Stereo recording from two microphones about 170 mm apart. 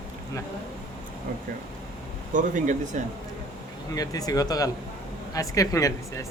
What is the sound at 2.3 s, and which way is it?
Speech, 50° right (ahead or behind).